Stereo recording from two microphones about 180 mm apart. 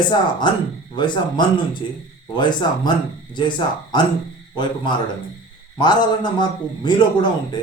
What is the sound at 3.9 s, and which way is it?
A man's voice, 25° left (ahead or behind).